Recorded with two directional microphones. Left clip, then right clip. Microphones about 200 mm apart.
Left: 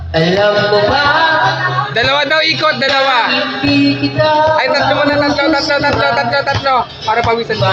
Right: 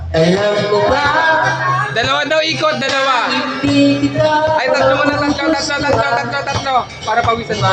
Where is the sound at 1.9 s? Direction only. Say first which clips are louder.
Left 2 dB; 5° left (ahead or behind).